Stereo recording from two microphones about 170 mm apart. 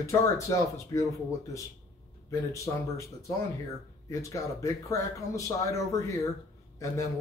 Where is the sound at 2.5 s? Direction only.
20° left (ahead or behind).